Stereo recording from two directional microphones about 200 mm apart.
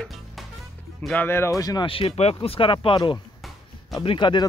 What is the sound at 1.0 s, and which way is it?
Speech, 10° left (ahead or behind).